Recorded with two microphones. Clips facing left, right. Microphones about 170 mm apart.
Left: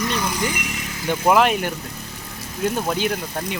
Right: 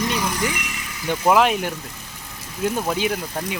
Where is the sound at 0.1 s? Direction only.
5° right (ahead or behind).